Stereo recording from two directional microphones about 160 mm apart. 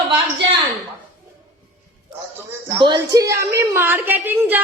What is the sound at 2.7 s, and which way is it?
A woman's voice, 30° right (ahead or behind).